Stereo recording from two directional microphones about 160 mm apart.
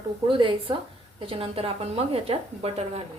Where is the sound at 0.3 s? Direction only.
30° right (ahead or behind).